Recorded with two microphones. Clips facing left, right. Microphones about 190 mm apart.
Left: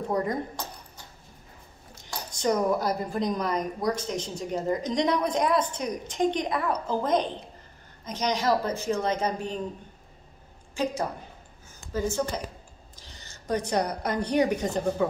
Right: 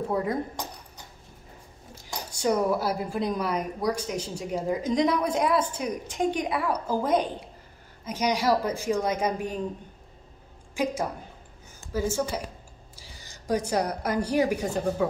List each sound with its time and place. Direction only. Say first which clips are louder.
0.1 s speech: left 1 dB; 5° right (ahead or behind)
0.6 s a sound: right 1 dB; 15° right (ahead or behind)
2.3 s a woman's voice: even; 5° right (ahead or behind)
10.8 s a woman's voice: right 1 dB; 10° right (ahead or behind)